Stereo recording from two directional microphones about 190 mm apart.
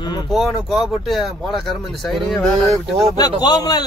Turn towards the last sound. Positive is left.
turn(degrees=20)  # may be behind; listen again after turning